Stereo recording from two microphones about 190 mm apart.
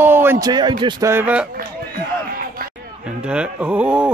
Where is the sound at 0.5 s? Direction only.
25° right (ahead or behind); by 1.5 s 5° right (ahead or behind).